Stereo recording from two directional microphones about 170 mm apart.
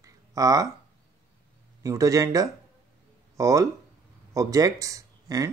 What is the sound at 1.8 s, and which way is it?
Speech, 20° right (ahead or behind).